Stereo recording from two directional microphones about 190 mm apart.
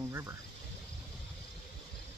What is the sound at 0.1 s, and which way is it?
Cricket, 15° right (ahead or behind).